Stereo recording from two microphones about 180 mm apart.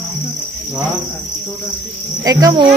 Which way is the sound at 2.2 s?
20° right (ahead or behind).